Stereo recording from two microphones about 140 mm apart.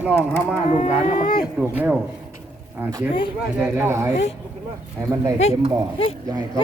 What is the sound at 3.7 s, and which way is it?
Speech, 20° right (ahead or behind).